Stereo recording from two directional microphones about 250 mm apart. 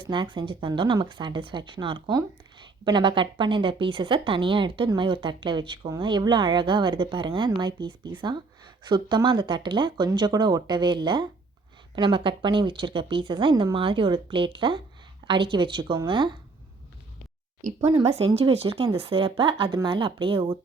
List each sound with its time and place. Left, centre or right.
0.1 s a woman's voice: centre
17.6 s a woman's voice: right